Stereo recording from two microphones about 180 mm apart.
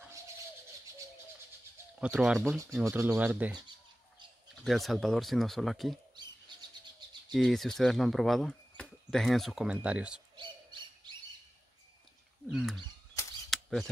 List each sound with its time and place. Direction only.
2.0 s speech: 5° right (ahead or behind)
2.8 s speech: 15° right (ahead or behind)
4.6 s speech: centre (ahead or behind)
7.3 s speech: centre (ahead or behind)
10.3 s owl: 25° right (ahead or behind)
12.4 s wild animals: centre (ahead or behind)
13.5 s a sound: centre (ahead or behind)